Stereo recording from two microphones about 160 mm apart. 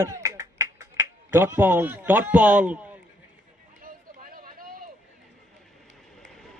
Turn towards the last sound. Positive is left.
turn(degrees=-65)  # may be behind; listen again after turning